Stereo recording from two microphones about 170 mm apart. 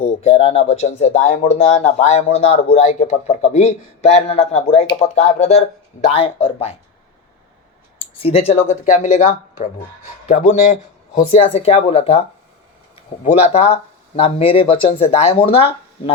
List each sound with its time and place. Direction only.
0.0 s speech: 35° left (ahead or behind)
8.2 s speech: 35° left (ahead or behind)